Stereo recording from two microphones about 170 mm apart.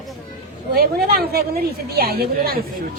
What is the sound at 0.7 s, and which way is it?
A woman's voice, 65° right (ahead or behind).